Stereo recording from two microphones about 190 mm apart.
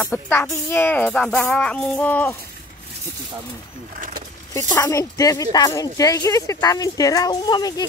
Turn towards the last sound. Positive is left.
turn(degrees=20)  # may be behind; listen again after turning